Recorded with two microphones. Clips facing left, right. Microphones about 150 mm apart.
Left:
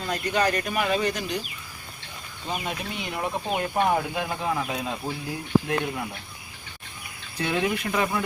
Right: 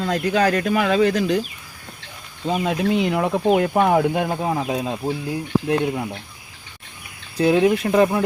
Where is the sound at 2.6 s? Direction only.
90° right; by 4.6 s 45° right (ahead or behind).